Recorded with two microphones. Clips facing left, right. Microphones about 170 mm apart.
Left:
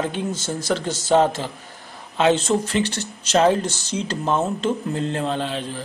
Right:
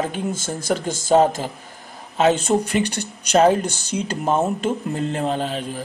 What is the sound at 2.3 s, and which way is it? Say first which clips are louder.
Speech: even; 10° right (ahead or behind).